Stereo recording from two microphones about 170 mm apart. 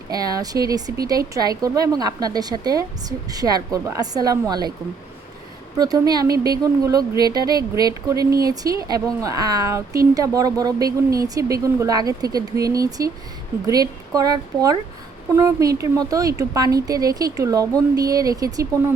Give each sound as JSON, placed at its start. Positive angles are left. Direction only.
{"t": 0.1, "sound": "a woman's voice", "side_deg": -20}
{"t": 5.7, "sound": "a woman's voice", "side_deg": -25}